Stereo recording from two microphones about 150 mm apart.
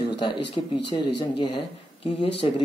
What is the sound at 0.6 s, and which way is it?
Speech, 40° left (ahead or behind).